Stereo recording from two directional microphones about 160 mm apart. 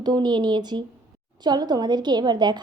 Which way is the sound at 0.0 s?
25° right (ahead or behind).